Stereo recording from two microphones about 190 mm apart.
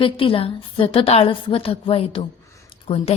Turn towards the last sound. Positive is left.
turn(degrees=30)  # may be behind; listen again after turning